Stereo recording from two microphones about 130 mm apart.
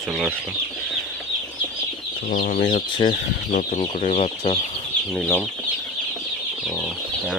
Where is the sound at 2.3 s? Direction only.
90° left.